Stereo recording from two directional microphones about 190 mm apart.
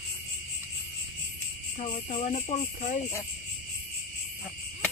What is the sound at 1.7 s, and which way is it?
Cricket, 40° left (ahead or behind).